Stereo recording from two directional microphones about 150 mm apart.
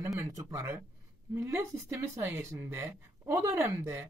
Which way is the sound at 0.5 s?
20° right (ahead or behind).